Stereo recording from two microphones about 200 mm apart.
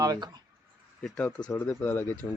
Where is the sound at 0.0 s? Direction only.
20° right (ahead or behind).